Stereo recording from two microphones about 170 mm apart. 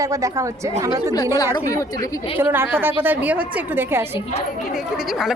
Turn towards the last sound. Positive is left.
turn(degrees=-10)  # may be behind; listen again after turning